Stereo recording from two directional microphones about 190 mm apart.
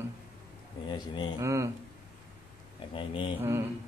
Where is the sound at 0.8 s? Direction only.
25° left (ahead or behind).